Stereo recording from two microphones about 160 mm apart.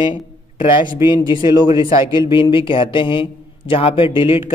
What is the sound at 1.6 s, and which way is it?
A man's voice, 30° left (ahead or behind).